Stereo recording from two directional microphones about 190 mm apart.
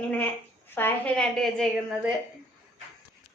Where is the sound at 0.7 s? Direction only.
10° left (ahead or behind).